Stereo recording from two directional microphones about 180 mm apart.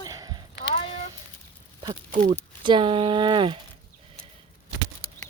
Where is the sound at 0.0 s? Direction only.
20° right (ahead or behind).